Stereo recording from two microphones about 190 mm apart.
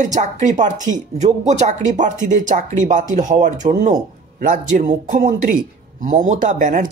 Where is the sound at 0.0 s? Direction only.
40° right (ahead or behind).